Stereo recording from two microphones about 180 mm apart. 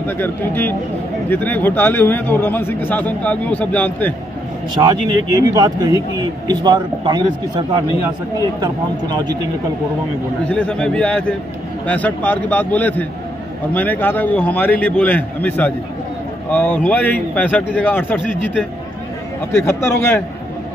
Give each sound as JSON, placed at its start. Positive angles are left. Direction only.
{"t": 0.0, "sound": "speech", "side_deg": 10}
{"t": 4.8, "sound": "speech", "side_deg": -20}
{"t": 10.5, "sound": "a man's voice", "side_deg": 5}
{"t": 19.5, "sound": "speech", "side_deg": 15}